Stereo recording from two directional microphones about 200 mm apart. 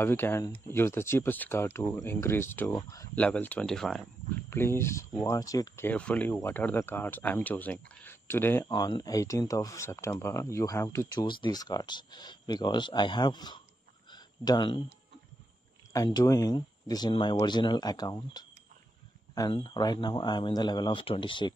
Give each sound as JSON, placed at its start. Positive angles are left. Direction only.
{"t": 0.0, "sound": "speech", "side_deg": 10}
{"t": 4.5, "sound": "speech", "side_deg": 10}
{"t": 8.6, "sound": "speech", "side_deg": 20}
{"t": 14.1, "sound": "a sound", "side_deg": 20}
{"t": 15.9, "sound": "speech", "side_deg": 20}